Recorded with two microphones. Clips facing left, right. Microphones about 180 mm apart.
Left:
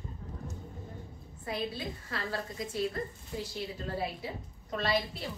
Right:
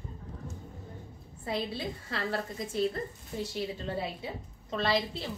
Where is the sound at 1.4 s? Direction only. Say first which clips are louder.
Right 2 dB; 25° right (ahead or behind).